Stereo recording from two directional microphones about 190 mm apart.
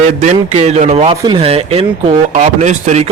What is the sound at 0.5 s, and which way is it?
Speech, 35° right (ahead or behind).